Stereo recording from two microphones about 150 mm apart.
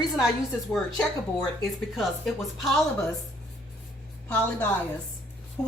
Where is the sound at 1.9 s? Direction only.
Centre (ahead or behind).